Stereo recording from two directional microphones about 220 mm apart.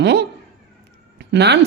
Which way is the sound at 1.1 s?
50° right (ahead or behind).